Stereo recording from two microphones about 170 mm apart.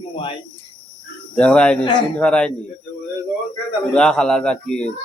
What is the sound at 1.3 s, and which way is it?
Speech, 5° left (ahead or behind).